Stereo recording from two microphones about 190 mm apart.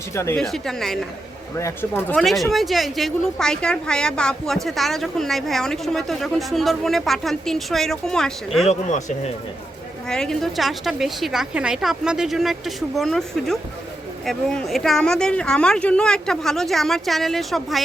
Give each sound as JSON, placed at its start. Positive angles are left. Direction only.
{"t": 0.1, "sound": "speech", "side_deg": 15}
{"t": 0.3, "sound": "a woman's voice", "side_deg": 0}
{"t": 1.5, "sound": "speech", "side_deg": 15}
{"t": 2.2, "sound": "a woman's voice", "side_deg": 0}
{"t": 8.6, "sound": "speech", "side_deg": 35}
{"t": 10.1, "sound": "a woman's voice", "side_deg": 5}